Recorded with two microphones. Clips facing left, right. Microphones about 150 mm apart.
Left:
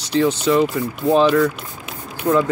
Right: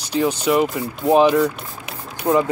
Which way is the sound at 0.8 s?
25° right (ahead or behind).